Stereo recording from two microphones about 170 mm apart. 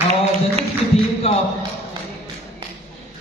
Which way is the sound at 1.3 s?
35° left (ahead or behind).